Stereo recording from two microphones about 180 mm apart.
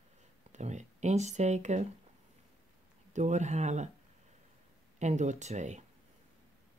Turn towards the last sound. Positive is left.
turn(degrees=-40)  # may be behind; listen again after turning